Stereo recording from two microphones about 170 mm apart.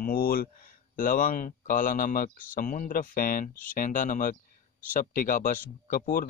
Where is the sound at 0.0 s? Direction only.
60° left (ahead or behind).